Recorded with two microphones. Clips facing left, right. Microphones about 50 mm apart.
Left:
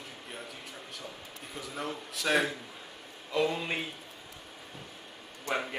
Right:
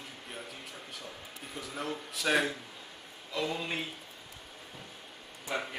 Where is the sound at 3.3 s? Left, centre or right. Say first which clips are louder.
Left 4 dB; centre.